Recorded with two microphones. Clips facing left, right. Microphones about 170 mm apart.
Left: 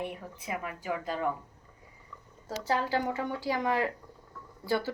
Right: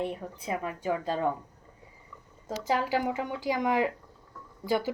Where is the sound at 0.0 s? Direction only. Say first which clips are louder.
Right 4 dB; 30° right (ahead or behind).